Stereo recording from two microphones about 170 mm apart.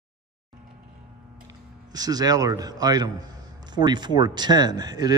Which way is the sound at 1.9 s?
25° right (ahead or behind).